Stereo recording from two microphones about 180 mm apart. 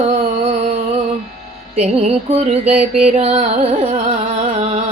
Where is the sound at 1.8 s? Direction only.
35° right (ahead or behind).